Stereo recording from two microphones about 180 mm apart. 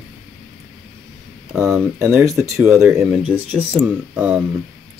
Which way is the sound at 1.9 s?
15° right (ahead or behind).